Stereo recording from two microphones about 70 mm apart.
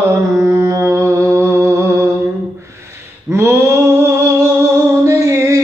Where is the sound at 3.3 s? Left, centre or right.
Right.